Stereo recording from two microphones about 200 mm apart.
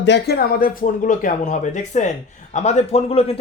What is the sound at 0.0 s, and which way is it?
A man's voice, 60° left (ahead or behind).